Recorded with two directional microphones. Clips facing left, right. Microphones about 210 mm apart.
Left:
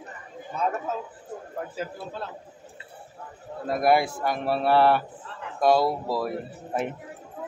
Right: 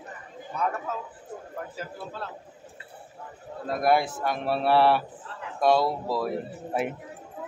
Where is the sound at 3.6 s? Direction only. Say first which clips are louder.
Left 2 dB; 10° left (ahead or behind).